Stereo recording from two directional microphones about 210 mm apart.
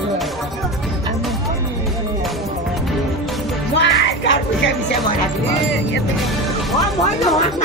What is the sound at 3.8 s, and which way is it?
Music, 60° left (ahead or behind).